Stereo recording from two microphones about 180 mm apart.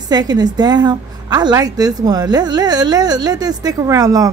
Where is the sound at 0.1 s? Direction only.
20° right (ahead or behind).